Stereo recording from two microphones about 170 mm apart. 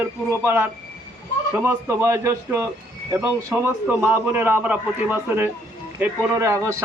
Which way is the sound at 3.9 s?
10° right (ahead or behind).